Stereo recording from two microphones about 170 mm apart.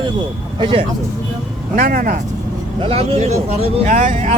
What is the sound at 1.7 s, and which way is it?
Speech, 55° right (ahead or behind).